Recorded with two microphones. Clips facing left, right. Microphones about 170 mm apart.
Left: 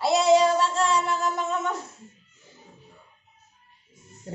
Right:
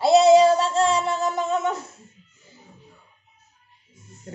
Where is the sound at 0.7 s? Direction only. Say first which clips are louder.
Right 3 dB; 25° right (ahead or behind).